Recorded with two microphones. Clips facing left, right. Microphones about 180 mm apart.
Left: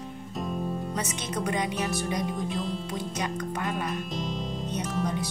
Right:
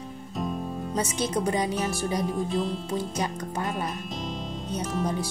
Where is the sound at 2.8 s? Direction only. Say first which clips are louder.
Right 3 dB; 30° right (ahead or behind).